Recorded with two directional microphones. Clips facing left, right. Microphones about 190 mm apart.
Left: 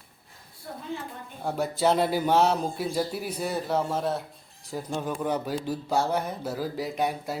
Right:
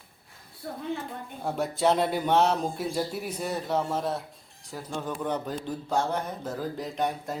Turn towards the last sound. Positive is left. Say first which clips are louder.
# left 1 dB
turn(degrees=10)  # may be behind; listen again after turning